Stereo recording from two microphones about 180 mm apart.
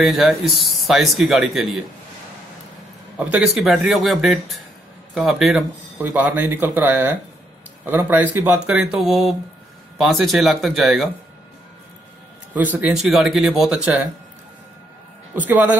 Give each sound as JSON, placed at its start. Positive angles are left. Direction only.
{"t": 0.2, "sound": "speech", "side_deg": 0}
{"t": 3.3, "sound": "speech", "side_deg": -5}
{"t": 12.5, "sound": "speech", "side_deg": -10}
{"t": 15.3, "sound": "speech", "side_deg": -10}